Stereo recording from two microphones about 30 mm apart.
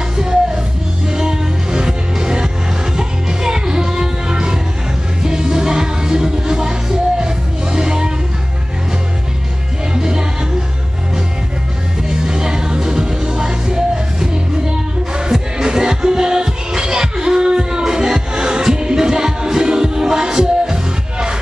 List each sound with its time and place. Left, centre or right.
0.2 s music: right
9.9 s music: right
12.1 s music: right
15.5 s music: right